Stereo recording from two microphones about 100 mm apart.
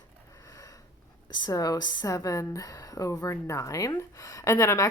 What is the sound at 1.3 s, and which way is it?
Speech, 45° left (ahead or behind).